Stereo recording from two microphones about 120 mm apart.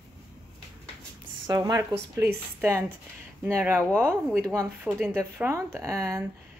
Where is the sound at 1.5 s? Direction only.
35° right (ahead or behind).